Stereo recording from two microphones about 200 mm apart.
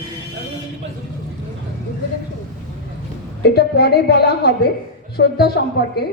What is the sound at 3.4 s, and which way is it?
A woman's voice, 55° left (ahead or behind).